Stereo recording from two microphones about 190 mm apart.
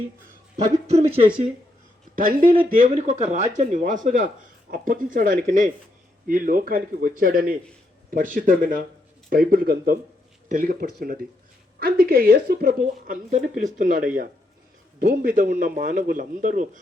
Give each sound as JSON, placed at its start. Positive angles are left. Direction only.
{"t": 0.9, "sound": "speech", "side_deg": -30}
{"t": 2.1, "sound": "speech", "side_deg": -45}